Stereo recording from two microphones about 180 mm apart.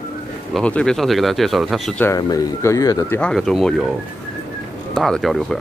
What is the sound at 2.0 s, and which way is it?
Speech, 15° left (ahead or behind).